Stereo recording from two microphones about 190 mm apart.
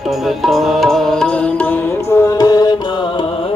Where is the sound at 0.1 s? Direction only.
Centre (ahead or behind).